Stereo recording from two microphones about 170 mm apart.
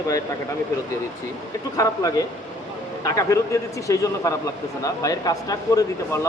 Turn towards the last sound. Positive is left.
turn(degrees=15)  # may be behind; listen again after turning